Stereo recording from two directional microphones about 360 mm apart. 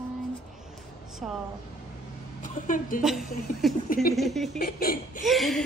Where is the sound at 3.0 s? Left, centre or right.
Centre.